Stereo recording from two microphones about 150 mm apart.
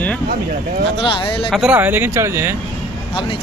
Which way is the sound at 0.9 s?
35° left (ahead or behind).